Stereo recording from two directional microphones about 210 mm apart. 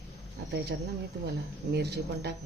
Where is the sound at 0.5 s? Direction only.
50° right (ahead or behind).